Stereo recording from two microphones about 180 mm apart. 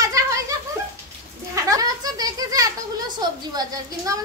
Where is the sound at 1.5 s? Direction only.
20° right (ahead or behind).